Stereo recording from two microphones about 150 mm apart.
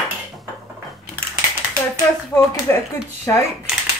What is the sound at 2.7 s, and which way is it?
Speech, 15° left (ahead or behind).